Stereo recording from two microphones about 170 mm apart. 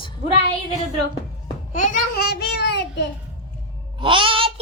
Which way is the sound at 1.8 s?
50° left (ahead or behind).